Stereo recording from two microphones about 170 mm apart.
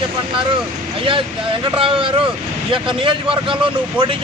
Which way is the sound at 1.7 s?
30° right (ahead or behind).